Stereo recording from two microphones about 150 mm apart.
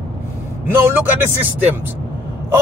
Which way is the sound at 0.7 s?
15° right (ahead or behind).